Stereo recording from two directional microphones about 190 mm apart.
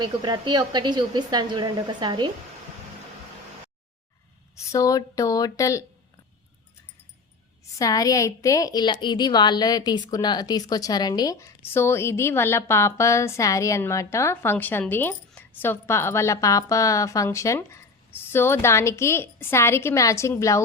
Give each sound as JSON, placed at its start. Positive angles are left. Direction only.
{"t": 0.0, "sound": "a woman's voice", "side_deg": -20}
{"t": 4.7, "sound": "a woman's voice", "side_deg": 15}
{"t": 7.8, "sound": "a woman's voice", "side_deg": 20}